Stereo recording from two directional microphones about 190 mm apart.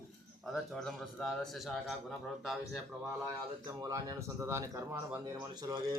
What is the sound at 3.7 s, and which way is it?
Speech, 20° right (ahead or behind).